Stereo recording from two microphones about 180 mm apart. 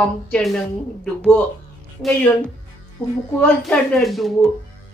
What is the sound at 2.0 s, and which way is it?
Speech, 5° left (ahead or behind).